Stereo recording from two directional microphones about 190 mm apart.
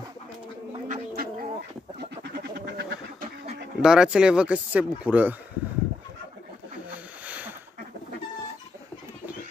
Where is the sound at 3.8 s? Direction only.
5° right (ahead or behind).